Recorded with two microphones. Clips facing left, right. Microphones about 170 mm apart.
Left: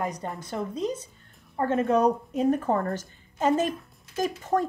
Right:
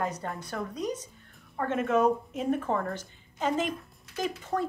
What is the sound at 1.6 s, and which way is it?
Speech, 35° left (ahead or behind).